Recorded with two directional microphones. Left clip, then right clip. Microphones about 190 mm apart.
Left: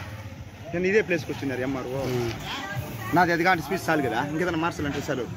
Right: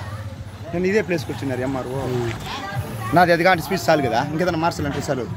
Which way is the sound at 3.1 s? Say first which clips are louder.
Right 6 dB; 60° right (ahead or behind).